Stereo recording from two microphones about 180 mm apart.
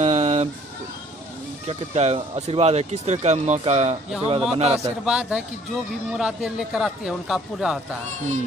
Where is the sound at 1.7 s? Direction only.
35° right (ahead or behind).